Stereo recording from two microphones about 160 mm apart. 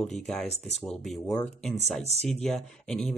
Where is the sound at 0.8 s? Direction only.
Centre (ahead or behind).